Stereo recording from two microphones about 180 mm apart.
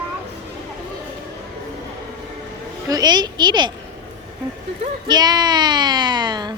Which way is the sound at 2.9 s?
25° right (ahead or behind).